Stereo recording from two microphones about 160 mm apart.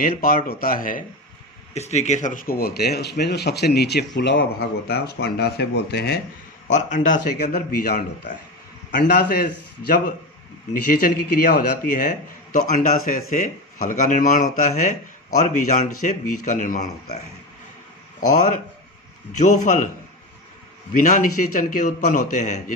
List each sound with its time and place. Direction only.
0.0 s speech: 65° left (ahead or behind)
1.7 s speech: 45° left (ahead or behind); by 6.1 s 90° left
6.7 s a man's voice: 50° left (ahead or behind)
7.3 s a man's voice: 75° left (ahead or behind); by 17.2 s 50° left (ahead or behind)
18.3 s a man's voice: 55° left (ahead or behind)
20.9 s speech: 55° left (ahead or behind)